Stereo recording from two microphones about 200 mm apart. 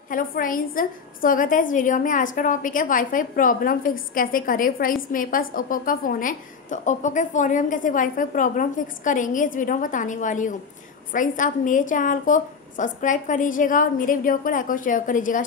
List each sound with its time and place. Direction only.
0.1 s a woman's voice: 45° left (ahead or behind)